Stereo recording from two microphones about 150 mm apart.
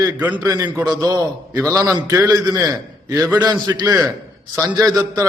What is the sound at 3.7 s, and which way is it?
A man's voice, 30° right (ahead or behind).